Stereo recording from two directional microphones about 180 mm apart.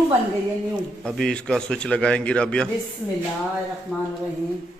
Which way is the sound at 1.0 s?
5° left (ahead or behind).